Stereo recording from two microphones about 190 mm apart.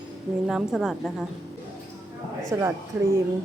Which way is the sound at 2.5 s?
15° right (ahead or behind).